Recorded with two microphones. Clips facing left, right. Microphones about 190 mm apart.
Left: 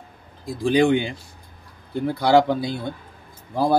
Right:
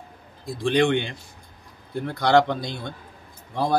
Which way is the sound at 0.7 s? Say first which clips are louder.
Left 3 dB; 5° left (ahead or behind).